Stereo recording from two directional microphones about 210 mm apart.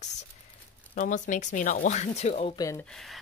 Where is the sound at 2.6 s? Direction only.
15° left (ahead or behind).